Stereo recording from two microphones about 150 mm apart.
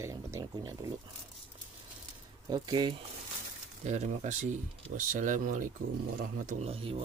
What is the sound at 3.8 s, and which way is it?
Speech, 50° right (ahead or behind).